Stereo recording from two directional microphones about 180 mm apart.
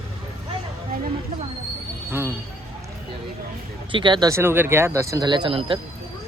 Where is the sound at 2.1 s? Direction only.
15° right (ahead or behind).